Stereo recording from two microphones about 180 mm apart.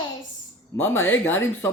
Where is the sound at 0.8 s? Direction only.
10° left (ahead or behind).